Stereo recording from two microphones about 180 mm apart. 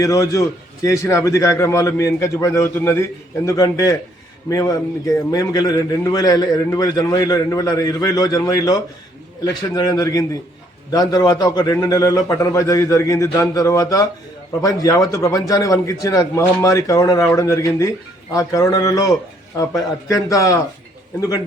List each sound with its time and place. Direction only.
0.0 s a man's voice: 20° left (ahead or behind)